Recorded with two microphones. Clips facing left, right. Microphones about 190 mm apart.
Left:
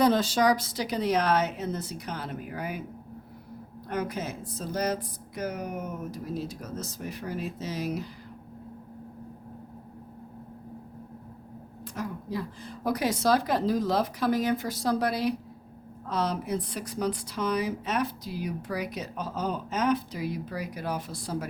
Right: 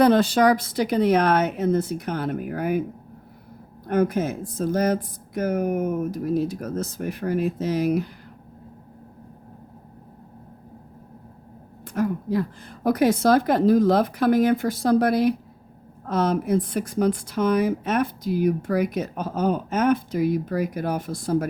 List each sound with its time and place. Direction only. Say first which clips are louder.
0.0 s a woman's voice: right 6 dB; 60° right (ahead or behind)
3.8 s speech: right 10 dB; 50° right (ahead or behind)
11.9 s speech: right 10 dB; 55° right (ahead or behind)